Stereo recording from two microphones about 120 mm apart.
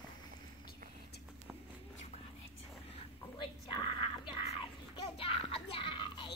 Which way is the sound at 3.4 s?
40° left (ahead or behind).